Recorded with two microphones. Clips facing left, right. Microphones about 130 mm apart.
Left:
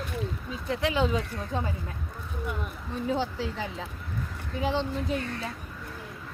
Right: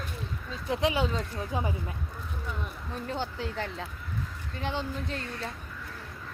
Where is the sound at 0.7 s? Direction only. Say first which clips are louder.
Left 1 dB; 15° right (ahead or behind).